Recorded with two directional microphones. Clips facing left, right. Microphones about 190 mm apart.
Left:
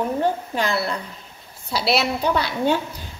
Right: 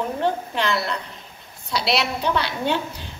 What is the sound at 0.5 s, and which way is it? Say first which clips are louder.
Speech: left 1 dB; 35° left (ahead or behind).